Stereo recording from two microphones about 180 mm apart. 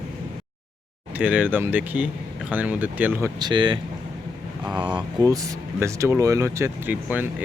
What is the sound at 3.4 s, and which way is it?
Speech, 25° right (ahead or behind).